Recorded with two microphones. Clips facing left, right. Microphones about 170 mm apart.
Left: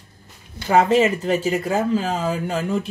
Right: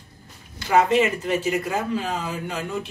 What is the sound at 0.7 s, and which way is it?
Speech, 35° left (ahead or behind).